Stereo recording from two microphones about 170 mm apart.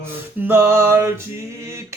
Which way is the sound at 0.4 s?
15° right (ahead or behind).